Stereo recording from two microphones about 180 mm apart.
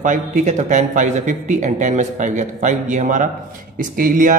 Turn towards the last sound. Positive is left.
turn(degrees=-50)  # may be behind; listen again after turning